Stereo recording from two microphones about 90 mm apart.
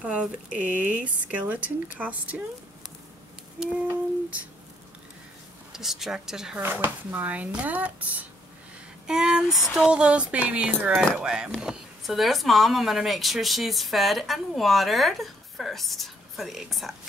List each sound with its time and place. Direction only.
0.0 s speech: 15° right (ahead or behind)
3.5 s a sound: 5° right (ahead or behind)
5.7 s speech: 5° right (ahead or behind)
6.6 s speech: 25° right (ahead or behind); by 16.9 s centre (ahead or behind)